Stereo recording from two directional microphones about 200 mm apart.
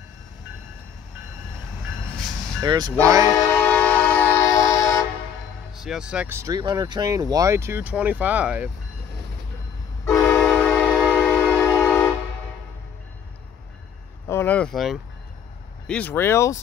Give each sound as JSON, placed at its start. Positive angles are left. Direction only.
{"t": 2.6, "sound": "speech", "side_deg": -20}
{"t": 3.3, "sound": "train", "side_deg": 15}
{"t": 5.9, "sound": "speech", "side_deg": -5}
{"t": 10.0, "sound": "train", "side_deg": 10}
{"t": 14.2, "sound": "speech", "side_deg": 10}